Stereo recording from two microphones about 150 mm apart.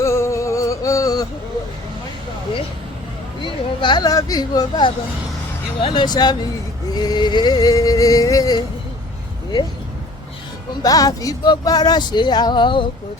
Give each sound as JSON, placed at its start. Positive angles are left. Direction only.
{"t": 0.0, "sound": "music", "side_deg": 20}
{"t": 3.4, "sound": "speech", "side_deg": 30}
{"t": 10.8, "sound": "speech", "side_deg": 25}